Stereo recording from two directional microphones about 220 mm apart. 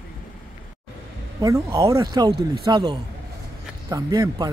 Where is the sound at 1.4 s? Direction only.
15° right (ahead or behind).